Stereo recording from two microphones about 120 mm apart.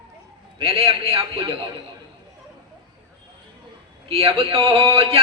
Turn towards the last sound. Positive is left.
turn(degrees=-55)  # may be behind; listen again after turning